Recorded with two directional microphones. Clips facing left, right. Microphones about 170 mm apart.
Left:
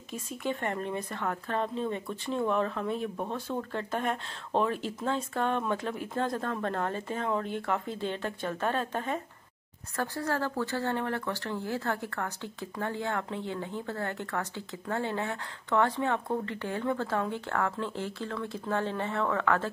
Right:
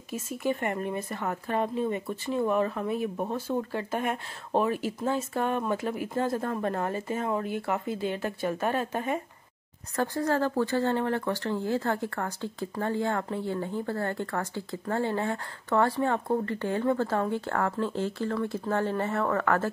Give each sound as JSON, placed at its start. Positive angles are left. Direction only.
{"t": 0.4, "sound": "speech", "side_deg": -5}